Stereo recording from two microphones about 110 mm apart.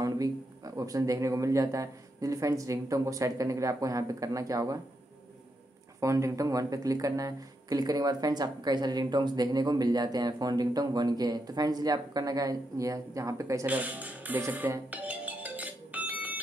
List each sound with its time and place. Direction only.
0.0 s speech: 30° right (ahead or behind)
5.9 s speech: 30° right (ahead or behind)
13.7 s speech: 15° right (ahead or behind)
14.9 s music: 15° right (ahead or behind)